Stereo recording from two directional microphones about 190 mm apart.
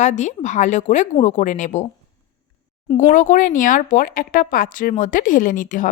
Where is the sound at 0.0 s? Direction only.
40° left (ahead or behind).